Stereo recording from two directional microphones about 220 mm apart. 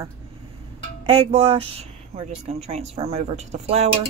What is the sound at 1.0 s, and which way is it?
Speech, 25° right (ahead or behind).